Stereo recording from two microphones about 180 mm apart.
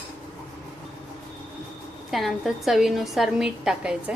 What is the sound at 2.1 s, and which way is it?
A woman's voice, centre (ahead or behind).